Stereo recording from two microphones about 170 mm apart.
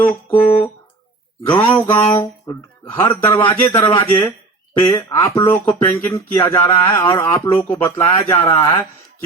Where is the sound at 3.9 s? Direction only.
25° left (ahead or behind).